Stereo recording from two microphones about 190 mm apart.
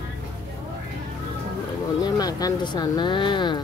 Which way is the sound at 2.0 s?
20° left (ahead or behind).